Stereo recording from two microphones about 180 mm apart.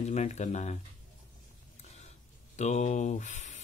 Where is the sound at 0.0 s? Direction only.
40° left (ahead or behind).